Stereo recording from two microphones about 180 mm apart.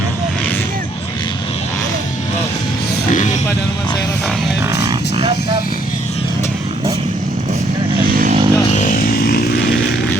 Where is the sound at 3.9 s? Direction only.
20° left (ahead or behind).